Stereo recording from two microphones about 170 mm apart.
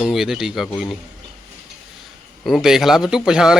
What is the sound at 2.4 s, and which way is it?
Speech, centre (ahead or behind).